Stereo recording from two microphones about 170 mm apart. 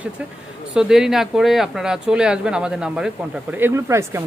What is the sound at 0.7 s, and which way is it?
Speech, 5° right (ahead or behind).